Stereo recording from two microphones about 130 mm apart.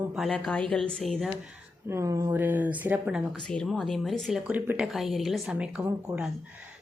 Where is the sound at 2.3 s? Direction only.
15° right (ahead or behind).